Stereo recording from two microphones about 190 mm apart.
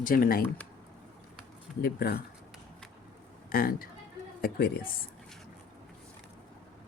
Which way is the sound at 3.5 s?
50° left (ahead or behind).